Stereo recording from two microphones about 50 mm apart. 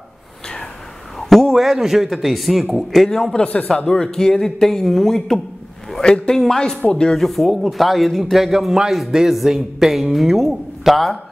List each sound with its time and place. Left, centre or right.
1.3 s a man's voice: centre
3.4 s speech: left
3.7 s speech: centre
7.2 s a man's voice: centre